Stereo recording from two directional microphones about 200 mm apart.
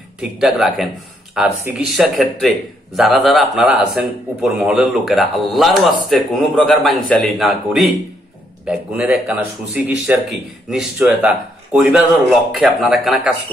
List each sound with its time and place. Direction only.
0.2 s a man's voice: 5° right (ahead or behind)